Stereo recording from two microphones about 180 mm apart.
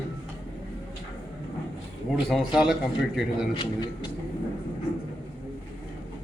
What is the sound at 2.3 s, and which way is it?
Speech, centre (ahead or behind).